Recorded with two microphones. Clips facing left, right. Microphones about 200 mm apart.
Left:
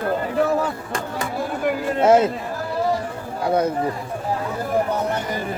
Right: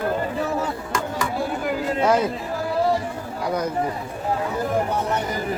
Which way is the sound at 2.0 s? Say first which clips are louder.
Left 5 dB; 25° left (ahead or behind).